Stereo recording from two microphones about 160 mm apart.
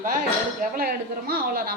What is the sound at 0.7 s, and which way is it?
A man's voice, 70° right (ahead or behind).